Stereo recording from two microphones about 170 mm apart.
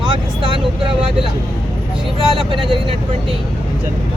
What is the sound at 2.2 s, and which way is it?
Speech, 30° right (ahead or behind).